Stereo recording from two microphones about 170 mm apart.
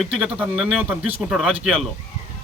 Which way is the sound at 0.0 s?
5° right (ahead or behind).